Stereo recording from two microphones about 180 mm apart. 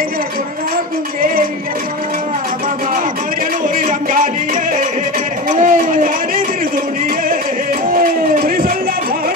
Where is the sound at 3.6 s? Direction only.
45° right (ahead or behind).